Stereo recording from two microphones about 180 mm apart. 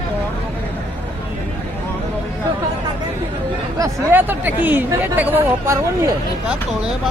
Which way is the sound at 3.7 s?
15° right (ahead or behind).